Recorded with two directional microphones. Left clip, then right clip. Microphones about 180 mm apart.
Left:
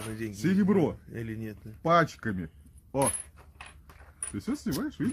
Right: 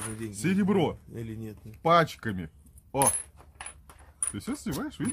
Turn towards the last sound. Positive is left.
turn(degrees=-25)  # may be behind; listen again after turning